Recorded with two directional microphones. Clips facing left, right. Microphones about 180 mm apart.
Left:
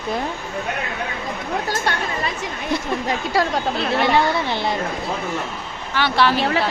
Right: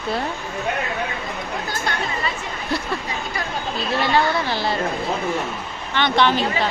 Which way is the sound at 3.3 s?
70° left (ahead or behind).